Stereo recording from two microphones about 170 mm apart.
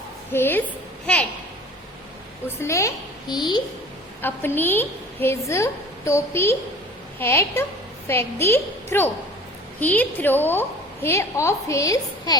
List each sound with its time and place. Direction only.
0.3 s a woman's voice: 10° left (ahead or behind)
2.6 s a child's voice: 15° left (ahead or behind)
4.2 s a woman's voice: 10° left (ahead or behind)